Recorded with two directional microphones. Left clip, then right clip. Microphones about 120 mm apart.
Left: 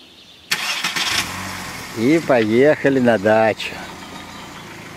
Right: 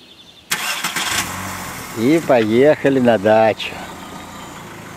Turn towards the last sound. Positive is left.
turn(degrees=5)  # may be behind; listen again after turning